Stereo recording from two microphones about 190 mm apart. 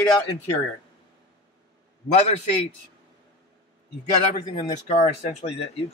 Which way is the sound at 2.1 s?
35° left (ahead or behind).